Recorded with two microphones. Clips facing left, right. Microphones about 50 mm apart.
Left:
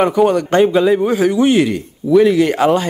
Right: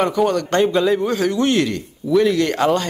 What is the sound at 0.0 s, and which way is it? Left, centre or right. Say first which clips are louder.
A man's voice: left 5 dB; centre.